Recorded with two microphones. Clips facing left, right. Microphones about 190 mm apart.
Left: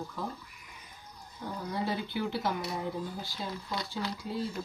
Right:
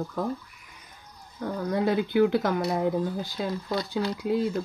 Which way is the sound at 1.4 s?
65° right (ahead or behind).